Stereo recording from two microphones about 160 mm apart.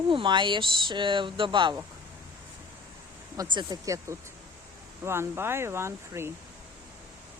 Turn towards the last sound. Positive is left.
turn(degrees=-15)  # may be behind; listen again after turning